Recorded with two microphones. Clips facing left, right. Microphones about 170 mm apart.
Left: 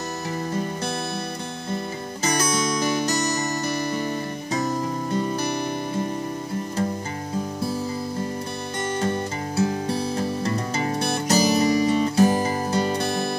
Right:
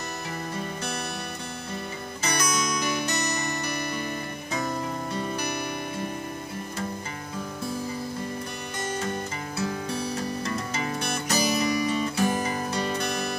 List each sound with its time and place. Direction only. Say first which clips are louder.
2.2 s music: left 5 dB; 30° left (ahead or behind)
9.6 s music: left 6 dB; 35° left (ahead or behind)